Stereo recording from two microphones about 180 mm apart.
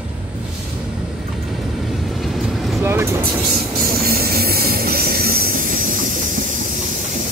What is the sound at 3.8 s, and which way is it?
Train, 55° right (ahead or behind).